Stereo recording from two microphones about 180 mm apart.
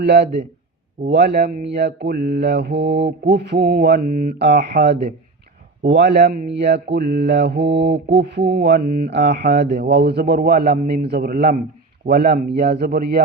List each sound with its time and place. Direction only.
0.0 s a man's voice: 65° right (ahead or behind)
5.8 s speech: 75° right (ahead or behind); by 13.2 s 60° right (ahead or behind)